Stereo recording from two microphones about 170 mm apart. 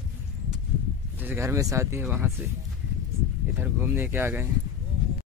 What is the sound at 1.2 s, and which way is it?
Speech, 15° right (ahead or behind).